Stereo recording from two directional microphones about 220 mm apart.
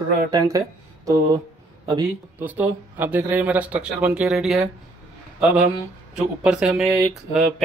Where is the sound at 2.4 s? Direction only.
10° right (ahead or behind).